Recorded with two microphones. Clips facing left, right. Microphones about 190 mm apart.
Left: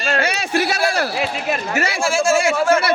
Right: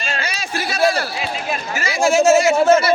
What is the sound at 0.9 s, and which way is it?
Speech, 65° left (ahead or behind).